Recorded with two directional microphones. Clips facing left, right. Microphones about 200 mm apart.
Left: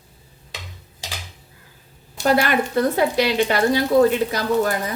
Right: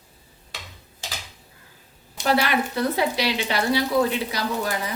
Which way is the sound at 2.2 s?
45° left (ahead or behind).